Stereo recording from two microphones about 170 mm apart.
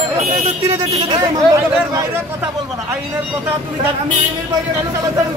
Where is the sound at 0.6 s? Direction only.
20° right (ahead or behind).